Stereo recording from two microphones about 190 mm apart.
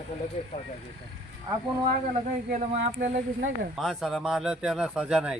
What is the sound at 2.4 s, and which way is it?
Speech, 40° right (ahead or behind).